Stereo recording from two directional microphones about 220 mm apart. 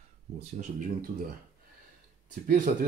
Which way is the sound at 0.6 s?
40° right (ahead or behind).